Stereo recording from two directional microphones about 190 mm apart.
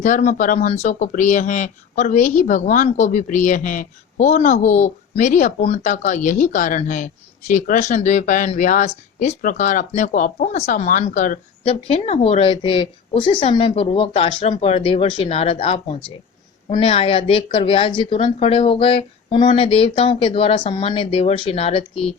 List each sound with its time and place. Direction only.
0.0 s a woman's voice: 40° left (ahead or behind)